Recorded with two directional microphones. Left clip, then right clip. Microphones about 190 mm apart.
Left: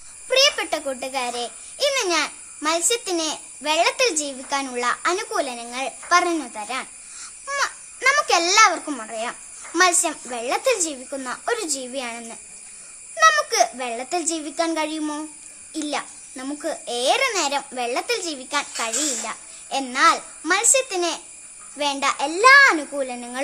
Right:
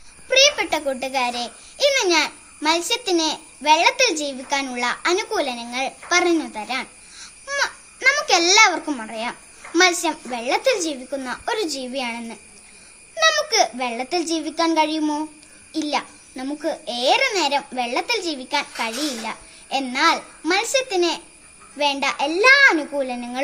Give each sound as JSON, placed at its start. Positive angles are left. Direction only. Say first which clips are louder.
{"t": 0.3, "sound": "a child's voice", "louder": "right 2 dB", "side_deg": 15}